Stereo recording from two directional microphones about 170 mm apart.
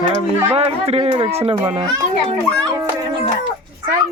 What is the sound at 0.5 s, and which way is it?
A child's voice, 35° right (ahead or behind).